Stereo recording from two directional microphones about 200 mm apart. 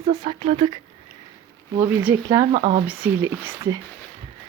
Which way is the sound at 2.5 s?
30° right (ahead or behind).